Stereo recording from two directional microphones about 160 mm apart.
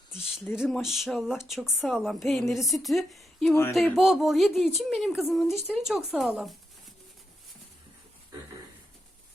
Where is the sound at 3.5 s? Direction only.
15° left (ahead or behind).